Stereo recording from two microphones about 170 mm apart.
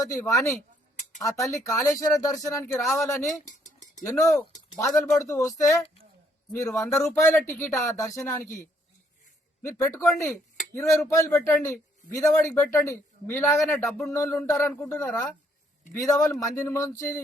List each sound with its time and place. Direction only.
0.0 s a man's voice: 20° left (ahead or behind)
3.4 s dishes: 45° left (ahead or behind)
4.2 s a man's voice: 20° left (ahead or behind)
9.6 s a man's voice: 15° left (ahead or behind)